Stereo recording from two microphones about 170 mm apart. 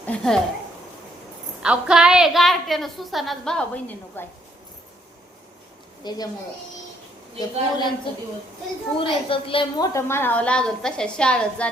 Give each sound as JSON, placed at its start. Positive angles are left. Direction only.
{"t": 0.0, "sound": "a woman's voice", "side_deg": 5}
{"t": 1.6, "sound": "a woman's voice", "side_deg": -5}
{"t": 6.0, "sound": "a woman's voice", "side_deg": 25}
{"t": 7.3, "sound": "a woman's voice", "side_deg": 25}
{"t": 9.0, "sound": "a woman's voice", "side_deg": 30}
{"t": 9.9, "sound": "a woman's voice", "side_deg": 15}